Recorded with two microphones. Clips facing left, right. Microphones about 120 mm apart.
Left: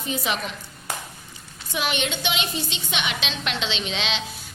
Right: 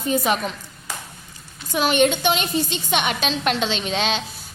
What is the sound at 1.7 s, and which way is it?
A woman's voice, 45° right (ahead or behind).